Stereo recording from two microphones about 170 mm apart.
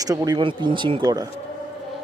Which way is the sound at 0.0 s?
20° right (ahead or behind).